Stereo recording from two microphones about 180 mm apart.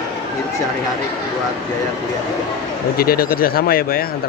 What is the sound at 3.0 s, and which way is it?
Speech, 55° left (ahead or behind).